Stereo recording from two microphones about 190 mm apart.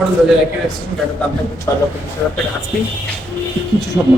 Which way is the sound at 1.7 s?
15° left (ahead or behind).